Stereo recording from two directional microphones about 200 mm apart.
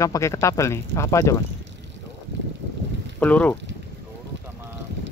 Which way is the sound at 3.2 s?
5° left (ahead or behind).